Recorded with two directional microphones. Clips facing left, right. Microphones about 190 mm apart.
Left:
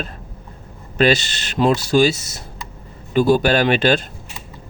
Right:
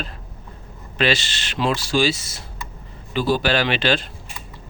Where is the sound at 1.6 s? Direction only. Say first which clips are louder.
Left 5 dB; 45° left (ahead or behind).